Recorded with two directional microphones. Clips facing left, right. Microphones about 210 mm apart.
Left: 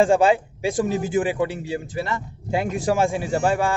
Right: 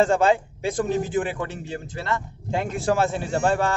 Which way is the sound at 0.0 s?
10° left (ahead or behind).